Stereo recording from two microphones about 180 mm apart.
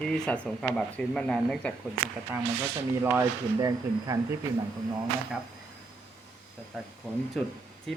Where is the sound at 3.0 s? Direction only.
20° right (ahead or behind).